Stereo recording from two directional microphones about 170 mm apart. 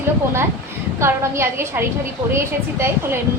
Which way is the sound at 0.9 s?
15° right (ahead or behind).